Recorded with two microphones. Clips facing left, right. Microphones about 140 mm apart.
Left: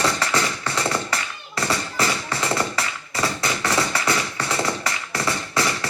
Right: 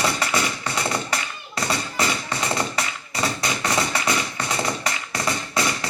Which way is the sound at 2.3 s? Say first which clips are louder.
Left 1 dB; 20° right (ahead or behind).